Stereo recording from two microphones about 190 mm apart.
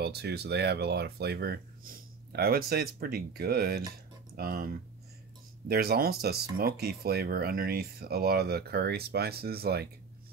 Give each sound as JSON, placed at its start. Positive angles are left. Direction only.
{"t": 0.0, "sound": "speech", "side_deg": -60}